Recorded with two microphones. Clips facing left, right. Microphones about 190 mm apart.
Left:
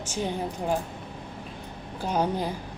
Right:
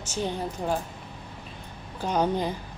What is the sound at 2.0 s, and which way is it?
Speech, 10° left (ahead or behind).